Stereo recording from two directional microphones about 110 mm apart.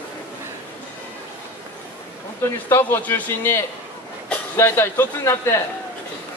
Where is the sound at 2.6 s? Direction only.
20° left (ahead or behind).